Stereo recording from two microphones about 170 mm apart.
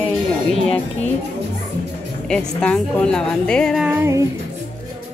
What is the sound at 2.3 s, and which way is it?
A woman's voice, 5° left (ahead or behind).